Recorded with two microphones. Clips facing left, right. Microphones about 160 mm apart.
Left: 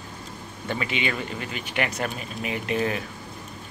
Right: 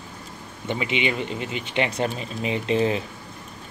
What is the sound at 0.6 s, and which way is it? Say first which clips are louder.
Speech: right 3 dB; 20° right (ahead or behind).